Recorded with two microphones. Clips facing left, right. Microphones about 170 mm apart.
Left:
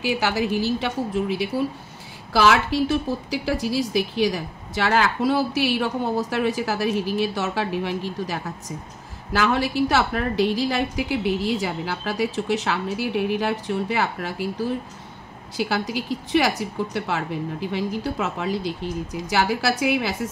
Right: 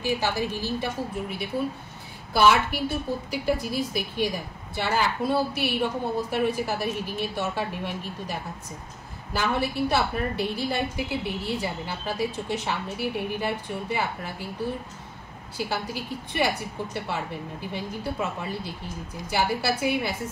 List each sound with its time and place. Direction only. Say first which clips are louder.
0.0 s a woman's voice: left 3 dB; 90° left
15.5 s a woman's voice: left 5 dB; 90° left